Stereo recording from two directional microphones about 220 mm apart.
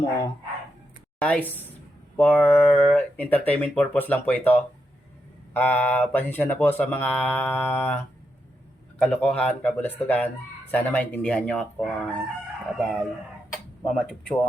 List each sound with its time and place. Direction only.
1.2 s speech: 5° left (ahead or behind)
9.0 s speech: 5° left (ahead or behind)